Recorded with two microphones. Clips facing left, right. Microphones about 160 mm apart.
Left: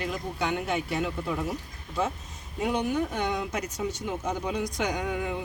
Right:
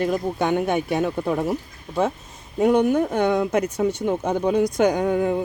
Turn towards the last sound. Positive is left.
turn(degrees=-45)  # may be behind; listen again after turning